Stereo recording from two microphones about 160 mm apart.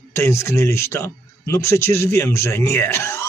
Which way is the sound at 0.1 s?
15° left (ahead or behind).